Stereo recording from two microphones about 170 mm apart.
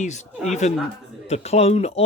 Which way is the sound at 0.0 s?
45° left (ahead or behind).